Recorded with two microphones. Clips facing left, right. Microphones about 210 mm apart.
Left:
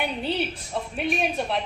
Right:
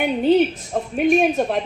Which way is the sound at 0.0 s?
50° right (ahead or behind).